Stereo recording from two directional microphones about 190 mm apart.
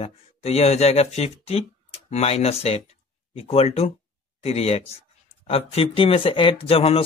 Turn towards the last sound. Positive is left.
turn(degrees=30)  # may be behind; listen again after turning